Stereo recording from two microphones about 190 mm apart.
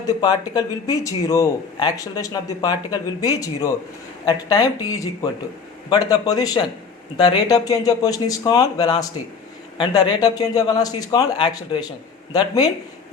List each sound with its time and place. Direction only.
0.2 s speech: 20° left (ahead or behind)